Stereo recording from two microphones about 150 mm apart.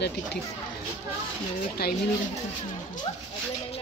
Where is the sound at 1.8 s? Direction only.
90° left.